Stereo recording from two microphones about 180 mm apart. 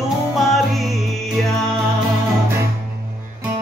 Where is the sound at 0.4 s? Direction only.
Centre (ahead or behind).